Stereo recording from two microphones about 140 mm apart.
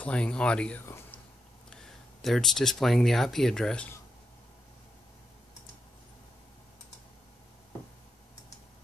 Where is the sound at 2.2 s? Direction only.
Centre (ahead or behind).